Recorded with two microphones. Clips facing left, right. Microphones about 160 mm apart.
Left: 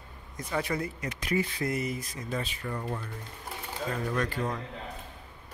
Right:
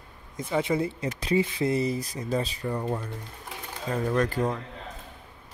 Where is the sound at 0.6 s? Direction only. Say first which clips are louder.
Right 5 dB; 25° right (ahead or behind).